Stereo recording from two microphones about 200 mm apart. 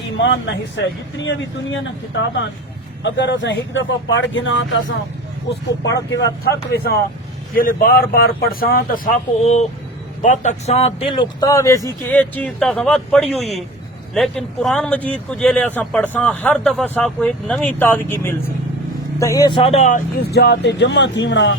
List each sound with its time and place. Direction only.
0.2 s speech: 65° left (ahead or behind)
6.7 s speech: 50° left (ahead or behind)
9.4 s speech: 35° left (ahead or behind)
20.3 s speech: 55° left (ahead or behind)